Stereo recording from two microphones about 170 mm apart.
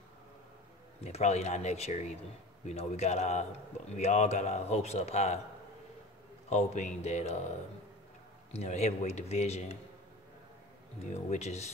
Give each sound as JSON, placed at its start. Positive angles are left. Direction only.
{"t": 1.0, "sound": "speech", "side_deg": 40}
{"t": 6.5, "sound": "speech", "side_deg": 40}
{"t": 8.5, "sound": "speech", "side_deg": 40}
{"t": 11.1, "sound": "speech", "side_deg": 40}